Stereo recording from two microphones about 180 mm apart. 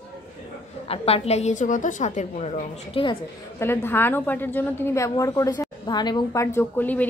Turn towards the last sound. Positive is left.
turn(degrees=10)  # may be behind; listen again after turning